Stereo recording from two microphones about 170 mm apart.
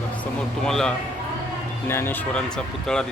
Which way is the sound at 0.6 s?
5° left (ahead or behind).